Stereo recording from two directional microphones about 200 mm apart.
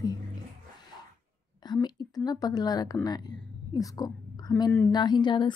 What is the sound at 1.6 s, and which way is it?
A woman's voice, 20° left (ahead or behind).